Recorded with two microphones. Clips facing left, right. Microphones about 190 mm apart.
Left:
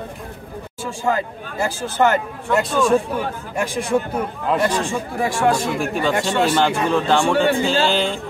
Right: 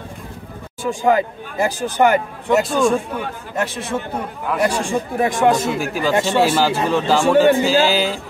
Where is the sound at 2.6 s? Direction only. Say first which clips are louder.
Even; centre (ahead or behind).